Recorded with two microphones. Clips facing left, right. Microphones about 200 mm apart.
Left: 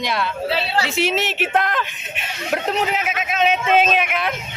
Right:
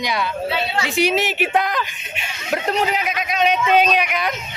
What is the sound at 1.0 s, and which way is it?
A man's voice, centre (ahead or behind).